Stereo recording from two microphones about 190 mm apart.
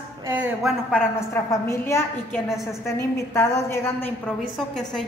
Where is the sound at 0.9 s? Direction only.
10° left (ahead or behind).